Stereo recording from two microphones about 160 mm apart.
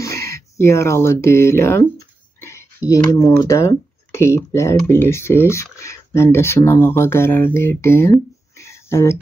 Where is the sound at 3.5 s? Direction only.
20° left (ahead or behind).